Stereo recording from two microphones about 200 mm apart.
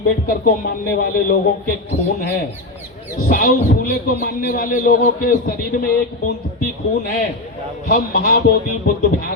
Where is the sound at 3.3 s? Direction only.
45° left (ahead or behind).